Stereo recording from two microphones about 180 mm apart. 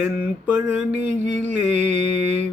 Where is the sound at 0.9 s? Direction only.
40° right (ahead or behind).